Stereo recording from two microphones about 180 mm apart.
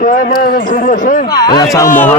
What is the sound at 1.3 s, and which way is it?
Speech, 20° left (ahead or behind).